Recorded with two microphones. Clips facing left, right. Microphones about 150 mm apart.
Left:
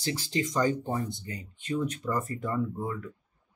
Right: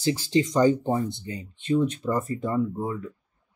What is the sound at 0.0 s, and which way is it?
Speech, 30° right (ahead or behind).